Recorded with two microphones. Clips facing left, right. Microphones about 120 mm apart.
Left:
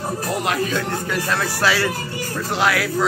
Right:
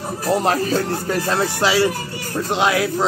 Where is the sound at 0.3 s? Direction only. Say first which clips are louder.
Right 6 dB; 35° right (ahead or behind).